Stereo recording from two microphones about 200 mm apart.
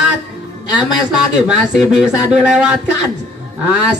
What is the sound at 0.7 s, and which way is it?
Speech, 5° right (ahead or behind).